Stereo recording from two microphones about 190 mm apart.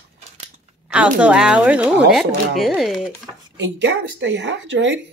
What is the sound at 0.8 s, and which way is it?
Speech, 5° right (ahead or behind).